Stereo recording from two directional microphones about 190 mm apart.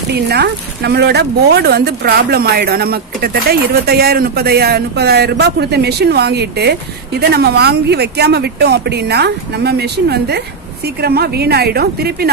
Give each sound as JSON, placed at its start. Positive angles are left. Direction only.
{"t": 0.1, "sound": "speech", "side_deg": -60}